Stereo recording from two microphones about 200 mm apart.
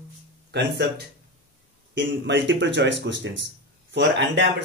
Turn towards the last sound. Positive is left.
turn(degrees=-60)  # may be behind; listen again after turning